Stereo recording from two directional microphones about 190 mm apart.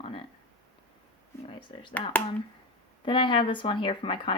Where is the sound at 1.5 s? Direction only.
25° left (ahead or behind).